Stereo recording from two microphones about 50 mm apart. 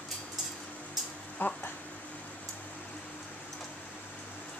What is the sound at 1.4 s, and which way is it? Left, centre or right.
Speech, left.